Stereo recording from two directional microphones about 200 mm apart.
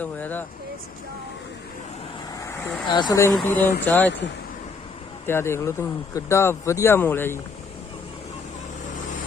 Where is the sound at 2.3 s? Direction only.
15° left (ahead or behind).